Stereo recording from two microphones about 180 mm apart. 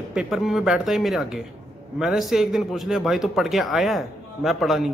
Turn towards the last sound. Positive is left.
turn(degrees=0)  # may be behind; listen again after turning